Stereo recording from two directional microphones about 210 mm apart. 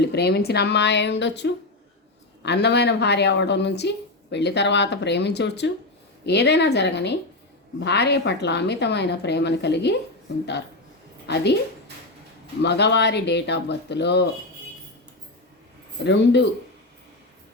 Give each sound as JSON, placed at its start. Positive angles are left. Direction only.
{"t": 0.0, "sound": "a woman's voice", "side_deg": 50}
{"t": 11.3, "sound": "a woman's voice", "side_deg": 50}
{"t": 12.6, "sound": "a woman's voice", "side_deg": 55}
{"t": 16.0, "sound": "speech", "side_deg": 55}